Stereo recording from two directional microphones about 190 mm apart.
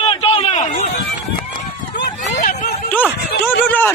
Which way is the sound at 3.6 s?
10° left (ahead or behind).